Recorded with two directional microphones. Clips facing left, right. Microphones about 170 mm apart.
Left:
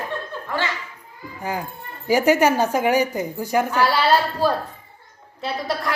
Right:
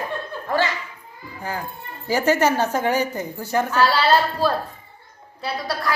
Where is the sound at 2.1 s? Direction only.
15° left (ahead or behind).